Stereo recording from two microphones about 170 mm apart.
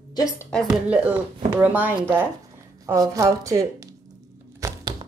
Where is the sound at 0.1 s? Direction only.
20° left (ahead or behind).